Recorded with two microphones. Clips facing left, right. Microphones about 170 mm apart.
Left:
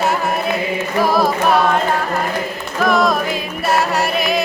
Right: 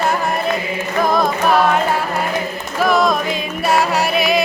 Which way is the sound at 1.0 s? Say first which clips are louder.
Even; 5° left (ahead or behind).